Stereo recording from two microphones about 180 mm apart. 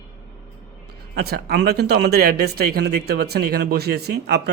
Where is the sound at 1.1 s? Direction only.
60° right (ahead or behind).